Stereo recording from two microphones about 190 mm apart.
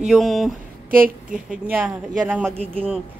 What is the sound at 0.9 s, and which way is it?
Speech, 45° right (ahead or behind).